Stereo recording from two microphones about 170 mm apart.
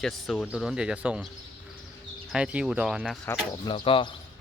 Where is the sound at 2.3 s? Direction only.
5° right (ahead or behind).